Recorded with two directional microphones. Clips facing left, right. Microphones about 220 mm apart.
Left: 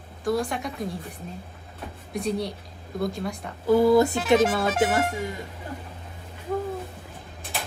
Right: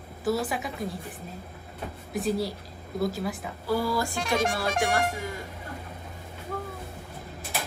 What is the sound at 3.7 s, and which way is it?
Speech, 20° left (ahead or behind).